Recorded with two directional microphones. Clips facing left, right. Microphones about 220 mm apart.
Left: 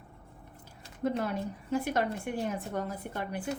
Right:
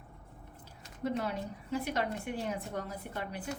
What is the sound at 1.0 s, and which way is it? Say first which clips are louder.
A woman's voice: left 3 dB; 50° left (ahead or behind).